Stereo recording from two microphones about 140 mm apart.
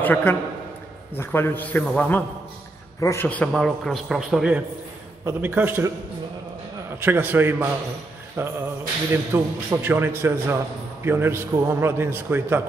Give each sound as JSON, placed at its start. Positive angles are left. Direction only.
{"t": 0.0, "sound": "a man's voice", "side_deg": 15}
{"t": 3.0, "sound": "a man's voice", "side_deg": 20}
{"t": 3.3, "sound": "a man's voice", "side_deg": 5}
{"t": 7.0, "sound": "a man's voice", "side_deg": -15}